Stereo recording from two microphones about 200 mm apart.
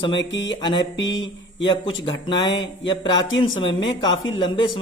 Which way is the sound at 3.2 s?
80° left.